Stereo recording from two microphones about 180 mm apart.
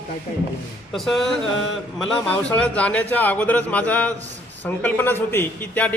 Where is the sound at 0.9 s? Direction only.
Centre (ahead or behind).